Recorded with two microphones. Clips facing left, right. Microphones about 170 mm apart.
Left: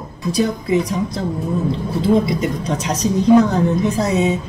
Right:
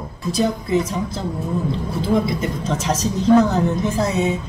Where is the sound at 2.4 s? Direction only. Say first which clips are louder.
Left 1 dB; 15° left (ahead or behind).